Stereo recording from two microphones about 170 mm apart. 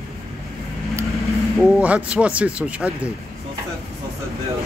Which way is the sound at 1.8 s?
10° right (ahead or behind).